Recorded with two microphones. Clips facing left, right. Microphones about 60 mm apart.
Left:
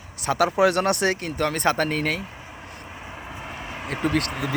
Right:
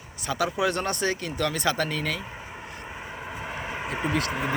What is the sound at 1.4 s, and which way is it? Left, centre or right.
Speech, left.